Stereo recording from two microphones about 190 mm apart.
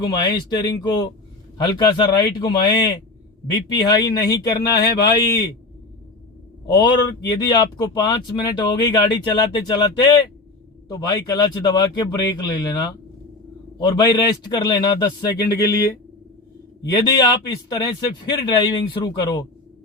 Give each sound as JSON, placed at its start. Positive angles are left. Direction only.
{"t": 0.0, "sound": "speech", "side_deg": 20}
{"t": 7.3, "sound": "speech", "side_deg": 20}